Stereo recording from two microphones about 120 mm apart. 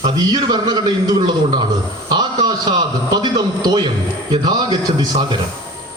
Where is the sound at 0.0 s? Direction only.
35° right (ahead or behind).